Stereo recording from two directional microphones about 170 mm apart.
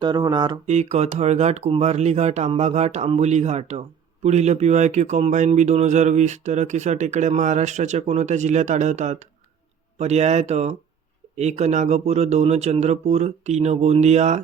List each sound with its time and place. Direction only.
0.0 s speech: 25° right (ahead or behind)
0.7 s speech: 40° right (ahead or behind)